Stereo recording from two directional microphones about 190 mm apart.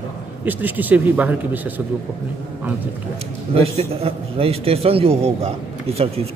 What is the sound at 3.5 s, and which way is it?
A man's voice, 30° right (ahead or behind).